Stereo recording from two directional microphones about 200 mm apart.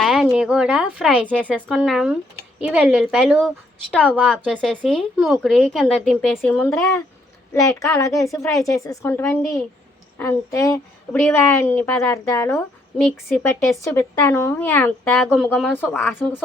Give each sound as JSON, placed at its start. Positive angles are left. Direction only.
{"t": 0.0, "sound": "a woman's voice", "side_deg": 0}
{"t": 8.2, "sound": "a woman's voice", "side_deg": 15}
{"t": 13.0, "sound": "a woman's voice", "side_deg": 0}
{"t": 13.7, "sound": "a woman's voice", "side_deg": 15}